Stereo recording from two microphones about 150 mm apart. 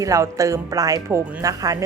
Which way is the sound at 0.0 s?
20° right (ahead or behind).